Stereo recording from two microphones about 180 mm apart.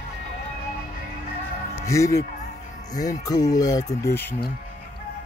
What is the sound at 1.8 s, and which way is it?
A man's voice, 15° left (ahead or behind).